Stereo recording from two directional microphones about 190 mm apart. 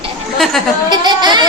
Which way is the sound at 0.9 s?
25° right (ahead or behind).